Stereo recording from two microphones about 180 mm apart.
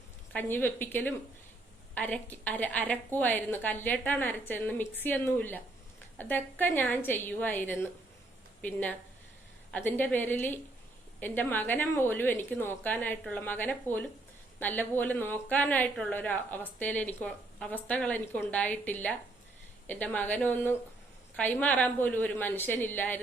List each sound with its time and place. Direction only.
0.3 s a woman's voice: 10° left (ahead or behind)